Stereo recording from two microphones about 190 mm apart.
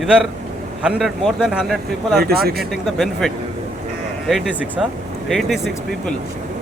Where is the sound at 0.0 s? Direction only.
5° right (ahead or behind).